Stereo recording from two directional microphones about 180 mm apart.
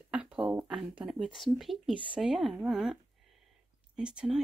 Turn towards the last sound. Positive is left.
turn(degrees=-5)  # may be behind; listen again after turning